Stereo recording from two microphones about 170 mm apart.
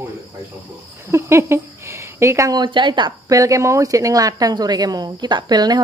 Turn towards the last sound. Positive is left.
turn(degrees=-25)  # may be behind; listen again after turning